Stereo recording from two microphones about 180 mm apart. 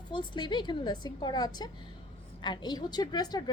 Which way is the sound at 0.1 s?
25° left (ahead or behind).